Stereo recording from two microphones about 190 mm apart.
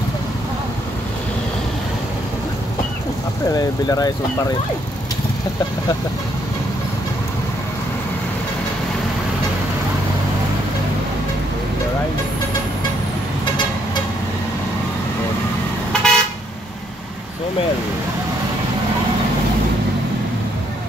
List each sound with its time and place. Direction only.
3.5 s speech: 20° left (ahead or behind)
15.9 s vehicle: 5° left (ahead or behind)